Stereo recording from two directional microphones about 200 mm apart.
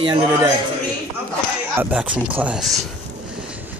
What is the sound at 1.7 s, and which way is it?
Speech, 10° right (ahead or behind).